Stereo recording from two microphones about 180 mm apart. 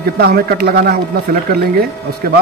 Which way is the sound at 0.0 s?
60° right (ahead or behind).